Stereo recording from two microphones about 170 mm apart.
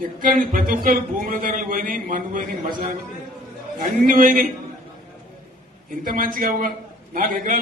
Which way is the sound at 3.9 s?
55° right (ahead or behind).